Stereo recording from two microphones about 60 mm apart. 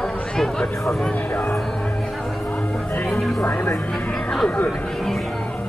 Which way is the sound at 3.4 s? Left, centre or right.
Left.